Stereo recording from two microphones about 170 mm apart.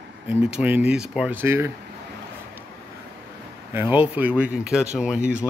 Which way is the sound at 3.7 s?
10° right (ahead or behind).